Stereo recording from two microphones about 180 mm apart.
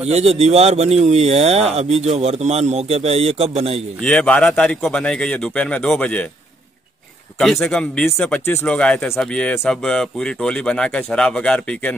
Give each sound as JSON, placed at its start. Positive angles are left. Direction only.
{"t": 0.0, "sound": "speech", "side_deg": -35}
{"t": 4.0, "sound": "speech", "side_deg": 5}
{"t": 7.6, "sound": "speech", "side_deg": 5}